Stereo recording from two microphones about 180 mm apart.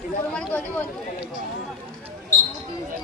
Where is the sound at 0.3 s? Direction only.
10° left (ahead or behind).